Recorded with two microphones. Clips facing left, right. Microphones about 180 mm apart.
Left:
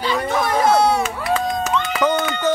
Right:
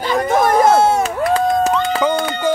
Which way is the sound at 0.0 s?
50° right (ahead or behind).